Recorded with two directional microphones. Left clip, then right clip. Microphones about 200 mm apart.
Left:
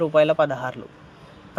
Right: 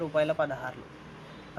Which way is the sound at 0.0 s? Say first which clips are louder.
Left 9 dB; 45° left (ahead or behind).